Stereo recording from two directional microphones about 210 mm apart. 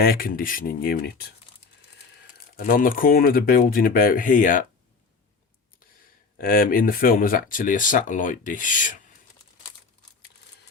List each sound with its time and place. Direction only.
0.0 s speech: 45° left (ahead or behind)
2.2 s speech: 40° left (ahead or behind)
6.4 s speech: 45° left (ahead or behind)